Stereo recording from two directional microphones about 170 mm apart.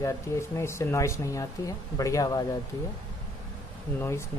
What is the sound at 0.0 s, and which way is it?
Speech, 15° left (ahead or behind).